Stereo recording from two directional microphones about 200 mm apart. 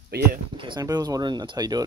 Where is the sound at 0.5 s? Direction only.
20° right (ahead or behind).